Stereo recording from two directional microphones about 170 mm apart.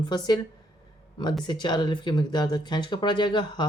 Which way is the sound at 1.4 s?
25° left (ahead or behind).